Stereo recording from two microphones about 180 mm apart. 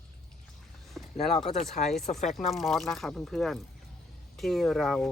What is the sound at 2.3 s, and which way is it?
Speech, centre (ahead or behind).